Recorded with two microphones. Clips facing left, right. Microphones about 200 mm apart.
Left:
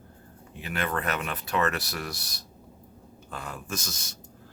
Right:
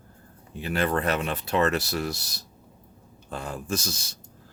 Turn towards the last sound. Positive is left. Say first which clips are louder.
# right 6 dB
turn(degrees=-30)  # may be behind; listen again after turning